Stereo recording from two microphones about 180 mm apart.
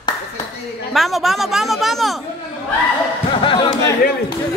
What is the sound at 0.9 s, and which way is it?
A man's voice, centre (ahead or behind).